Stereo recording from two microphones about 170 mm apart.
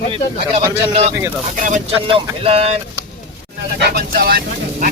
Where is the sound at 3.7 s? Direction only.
65° right (ahead or behind).